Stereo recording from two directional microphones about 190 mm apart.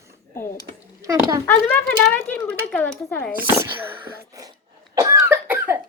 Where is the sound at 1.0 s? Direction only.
15° right (ahead or behind).